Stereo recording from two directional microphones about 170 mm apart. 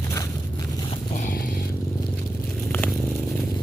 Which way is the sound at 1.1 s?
45° left (ahead or behind).